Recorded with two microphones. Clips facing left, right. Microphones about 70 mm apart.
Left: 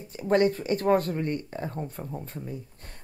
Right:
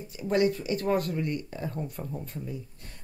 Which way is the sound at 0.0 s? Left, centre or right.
Left.